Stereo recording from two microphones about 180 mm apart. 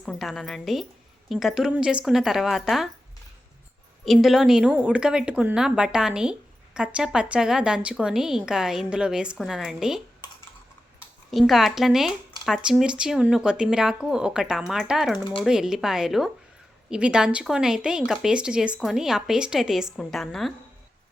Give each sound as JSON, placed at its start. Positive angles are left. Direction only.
{"t": 0.0, "sound": "speech", "side_deg": 0}
{"t": 4.0, "sound": "speech", "side_deg": 0}
{"t": 11.3, "sound": "speech", "side_deg": 0}